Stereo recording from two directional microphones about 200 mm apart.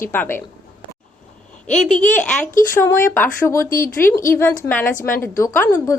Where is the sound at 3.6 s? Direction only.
45° left (ahead or behind).